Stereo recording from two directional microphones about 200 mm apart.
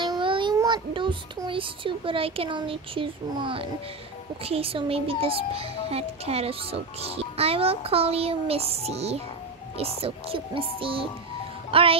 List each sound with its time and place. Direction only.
0.0 s child singing: 25° right (ahead or behind)
4.5 s a child's voice: 30° right (ahead or behind)